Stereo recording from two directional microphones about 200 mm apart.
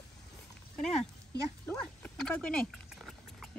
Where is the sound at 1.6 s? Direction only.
5° left (ahead or behind).